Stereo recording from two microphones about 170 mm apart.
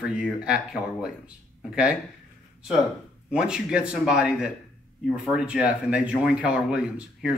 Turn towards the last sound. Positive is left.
turn(degrees=-5)  # may be behind; listen again after turning